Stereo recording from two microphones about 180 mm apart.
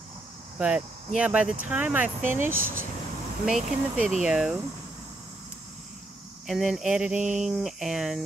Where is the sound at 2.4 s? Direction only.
50° right (ahead or behind).